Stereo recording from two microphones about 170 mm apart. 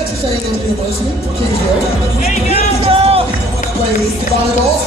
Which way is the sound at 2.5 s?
35° right (ahead or behind).